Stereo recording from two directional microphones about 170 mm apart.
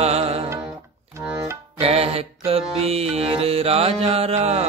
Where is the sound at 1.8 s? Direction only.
35° right (ahead or behind).